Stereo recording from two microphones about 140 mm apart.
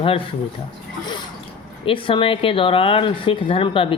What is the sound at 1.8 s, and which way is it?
Speech, 40° left (ahead or behind).